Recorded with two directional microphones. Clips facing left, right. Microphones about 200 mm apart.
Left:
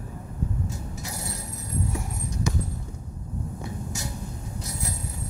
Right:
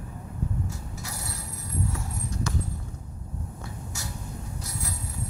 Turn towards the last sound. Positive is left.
turn(degrees=20)  # may be behind; listen again after turning